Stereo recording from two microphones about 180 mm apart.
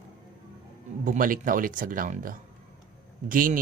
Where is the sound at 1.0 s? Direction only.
50° right (ahead or behind).